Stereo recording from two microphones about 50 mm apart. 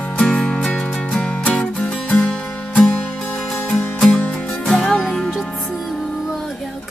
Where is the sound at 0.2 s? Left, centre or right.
Centre.